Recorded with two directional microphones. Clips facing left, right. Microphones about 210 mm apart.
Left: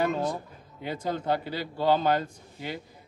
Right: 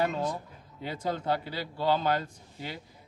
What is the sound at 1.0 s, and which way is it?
Speech, 20° left (ahead or behind).